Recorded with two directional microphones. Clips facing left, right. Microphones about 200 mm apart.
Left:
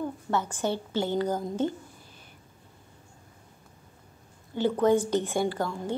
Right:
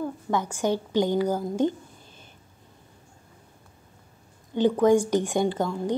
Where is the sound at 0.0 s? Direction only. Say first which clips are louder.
Right 2 dB; 10° right (ahead or behind).